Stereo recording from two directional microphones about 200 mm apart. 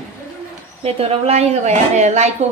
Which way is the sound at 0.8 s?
30° right (ahead or behind).